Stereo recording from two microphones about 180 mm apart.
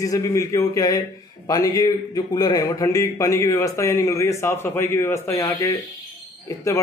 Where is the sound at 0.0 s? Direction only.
15° left (ahead or behind).